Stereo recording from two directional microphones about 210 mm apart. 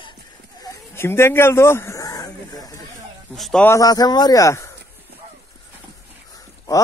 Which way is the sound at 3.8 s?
15° left (ahead or behind).